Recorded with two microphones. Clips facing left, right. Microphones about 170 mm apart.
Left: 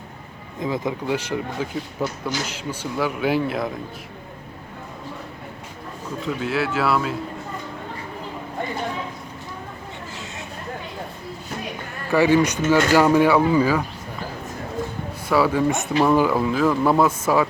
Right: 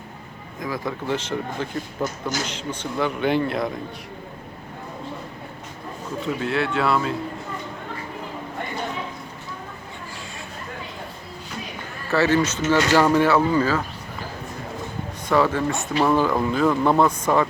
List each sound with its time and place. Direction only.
0.6 s speech: 20° left (ahead or behind)
1.0 s speech: 10° left (ahead or behind)
6.2 s speech: centre (ahead or behind)
12.1 s speech: 15° left (ahead or behind)
15.3 s speech: 10° left (ahead or behind)